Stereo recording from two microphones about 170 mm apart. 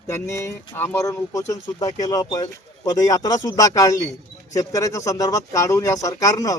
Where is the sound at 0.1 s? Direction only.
15° left (ahead or behind).